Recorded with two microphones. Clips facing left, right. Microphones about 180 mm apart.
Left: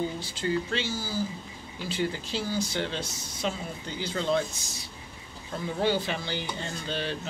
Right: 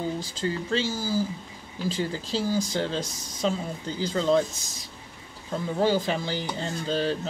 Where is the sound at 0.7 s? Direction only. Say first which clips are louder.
Right 5 dB; 35° right (ahead or behind).